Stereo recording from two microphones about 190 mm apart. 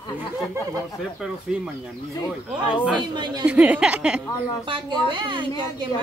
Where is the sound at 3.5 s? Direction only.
5° right (ahead or behind).